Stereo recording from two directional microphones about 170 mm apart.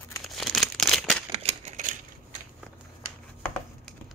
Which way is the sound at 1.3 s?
40° right (ahead or behind).